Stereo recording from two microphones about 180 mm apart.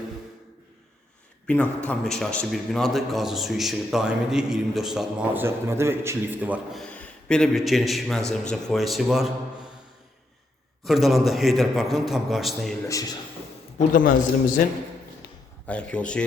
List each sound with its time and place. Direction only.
1.5 s a man's voice: 5° left (ahead or behind); by 6.8 s 10° right (ahead or behind)
6.8 s a man's voice: 5° left (ahead or behind)
10.8 s a man's voice: centre (ahead or behind)
12.9 s a man's voice: 20° left (ahead or behind)
13.7 s a man's voice: 50° left (ahead or behind)
15.6 s a man's voice: 5° left (ahead or behind)